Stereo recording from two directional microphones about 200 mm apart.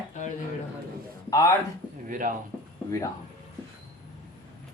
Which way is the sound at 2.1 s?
40° right (ahead or behind).